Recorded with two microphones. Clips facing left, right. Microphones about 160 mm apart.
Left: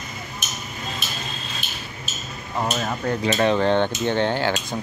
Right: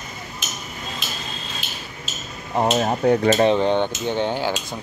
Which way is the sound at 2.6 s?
35° right (ahead or behind).